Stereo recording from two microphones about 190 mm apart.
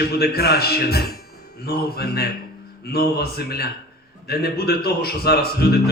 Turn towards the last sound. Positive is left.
turn(degrees=55)  # may be behind; listen again after turning